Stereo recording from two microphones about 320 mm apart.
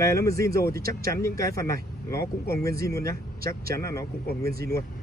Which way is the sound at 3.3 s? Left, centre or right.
Right.